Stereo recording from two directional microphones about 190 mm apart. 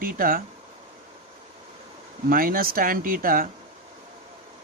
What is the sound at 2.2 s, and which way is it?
Speech, 50° right (ahead or behind).